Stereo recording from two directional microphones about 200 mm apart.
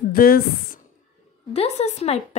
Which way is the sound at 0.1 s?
45° left (ahead or behind).